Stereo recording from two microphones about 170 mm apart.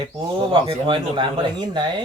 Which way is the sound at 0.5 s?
30° right (ahead or behind).